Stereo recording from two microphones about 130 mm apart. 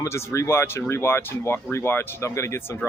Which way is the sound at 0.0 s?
20° left (ahead or behind).